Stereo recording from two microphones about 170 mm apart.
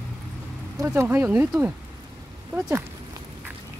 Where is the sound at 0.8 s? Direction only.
15° right (ahead or behind).